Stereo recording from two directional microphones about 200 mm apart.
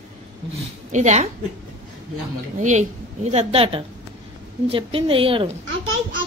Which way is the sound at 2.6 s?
35° right (ahead or behind).